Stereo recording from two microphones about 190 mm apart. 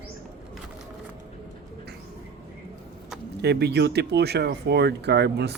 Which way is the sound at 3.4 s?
60° right (ahead or behind).